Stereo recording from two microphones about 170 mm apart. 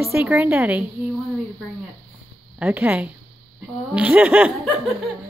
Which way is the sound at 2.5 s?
10° right (ahead or behind).